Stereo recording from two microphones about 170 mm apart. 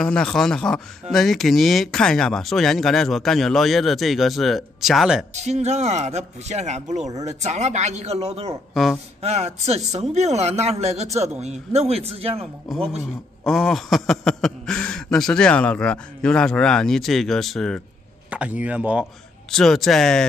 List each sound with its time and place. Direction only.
0.0 s speech: 5° left (ahead or behind)
5.3 s speech: 40° right (ahead or behind)
13.4 s speech: centre (ahead or behind)
18.3 s speech: 10° right (ahead or behind)